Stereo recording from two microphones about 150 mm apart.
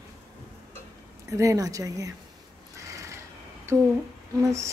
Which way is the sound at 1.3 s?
20° right (ahead or behind).